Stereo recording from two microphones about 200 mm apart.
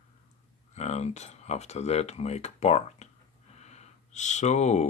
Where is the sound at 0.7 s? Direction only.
35° left (ahead or behind).